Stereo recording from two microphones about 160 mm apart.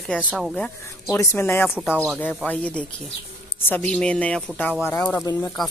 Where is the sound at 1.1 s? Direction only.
15° left (ahead or behind).